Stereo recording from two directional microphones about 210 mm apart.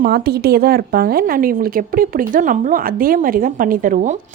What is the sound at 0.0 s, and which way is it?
A woman's voice, 45° right (ahead or behind).